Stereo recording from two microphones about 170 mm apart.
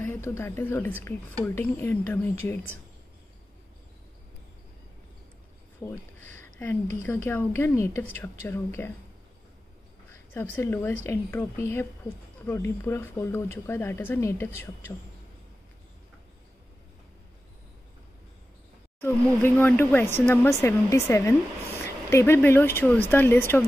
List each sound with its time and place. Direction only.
0.0 s speech: 15° left (ahead or behind)
5.9 s speech: 15° left (ahead or behind)
10.3 s speech: 10° left (ahead or behind)
19.0 s speech: 10° left (ahead or behind)